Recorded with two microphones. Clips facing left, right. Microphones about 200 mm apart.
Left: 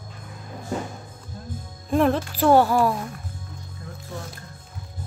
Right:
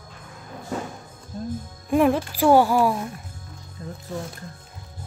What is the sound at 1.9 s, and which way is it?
A woman's voice, 10° right (ahead or behind).